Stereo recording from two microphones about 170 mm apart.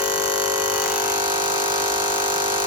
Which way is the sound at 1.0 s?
25° right (ahead or behind).